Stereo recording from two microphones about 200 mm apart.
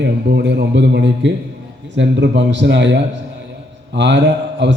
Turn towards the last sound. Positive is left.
turn(degrees=-60)  # may be behind; listen again after turning